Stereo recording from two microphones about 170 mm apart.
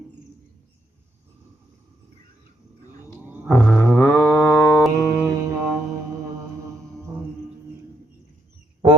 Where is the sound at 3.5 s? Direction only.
5° left (ahead or behind).